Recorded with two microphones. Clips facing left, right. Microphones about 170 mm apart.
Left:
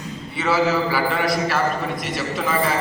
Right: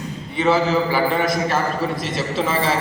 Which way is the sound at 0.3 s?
20° right (ahead or behind).